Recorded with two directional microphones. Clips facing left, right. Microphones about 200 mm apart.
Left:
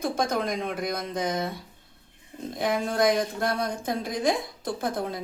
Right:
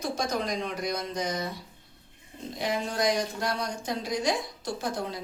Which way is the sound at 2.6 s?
50° left (ahead or behind).